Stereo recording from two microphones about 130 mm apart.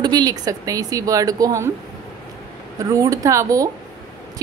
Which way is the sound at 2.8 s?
25° right (ahead or behind).